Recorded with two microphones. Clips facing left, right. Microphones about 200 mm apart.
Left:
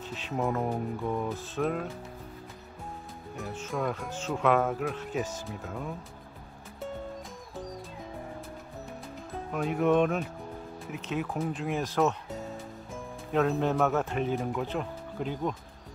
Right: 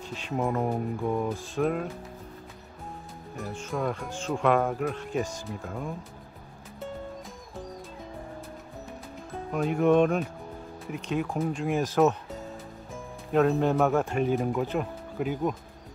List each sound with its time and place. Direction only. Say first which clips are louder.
0.1 s speech: right 2 dB; centre (ahead or behind)
1.3 s speech: right 3 dB; 5° left (ahead or behind)
3.3 s speech: right 1 dB; 5° left (ahead or behind)
9.3 s speech: right 3 dB; centre (ahead or behind)
12.9 s music: right 3 dB; centre (ahead or behind)
13.9 s speech: right 4 dB; centre (ahead or behind)